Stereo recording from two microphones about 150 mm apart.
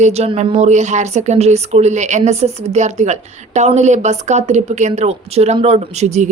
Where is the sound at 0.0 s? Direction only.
45° right (ahead or behind).